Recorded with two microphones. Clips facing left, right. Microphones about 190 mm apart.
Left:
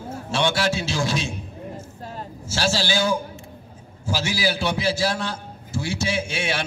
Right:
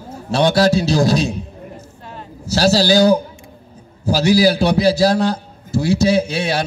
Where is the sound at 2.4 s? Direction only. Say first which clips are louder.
Right 10 dB; 40° right (ahead or behind).